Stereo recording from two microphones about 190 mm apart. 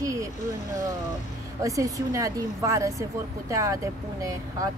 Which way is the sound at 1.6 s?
15° right (ahead or behind).